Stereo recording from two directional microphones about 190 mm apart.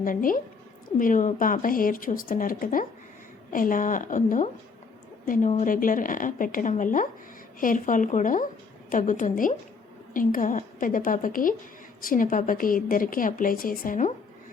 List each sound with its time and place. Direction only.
0.0 s a woman's voice: 45° left (ahead or behind)